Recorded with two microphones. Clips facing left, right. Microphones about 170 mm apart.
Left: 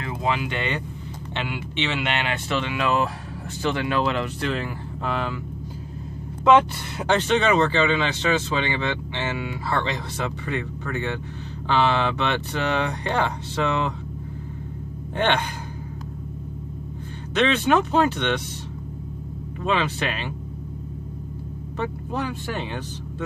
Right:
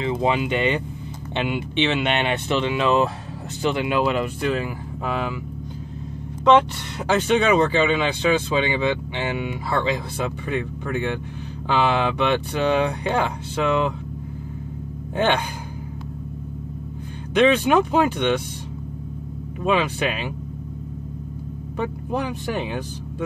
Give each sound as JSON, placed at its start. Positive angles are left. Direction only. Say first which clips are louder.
{"t": 0.0, "sound": "speech", "louder": "right 4 dB", "side_deg": -25}
{"t": 6.4, "sound": "speech", "louder": "right 1 dB", "side_deg": 5}
{"t": 7.2, "sound": "speech", "louder": "right 3 dB", "side_deg": -10}
{"t": 17.3, "sound": "speech", "louder": "right 3 dB", "side_deg": -10}
{"t": 19.6, "sound": "speech", "louder": "right 3 dB", "side_deg": -10}
{"t": 21.7, "sound": "speech", "louder": "right 2 dB", "side_deg": -15}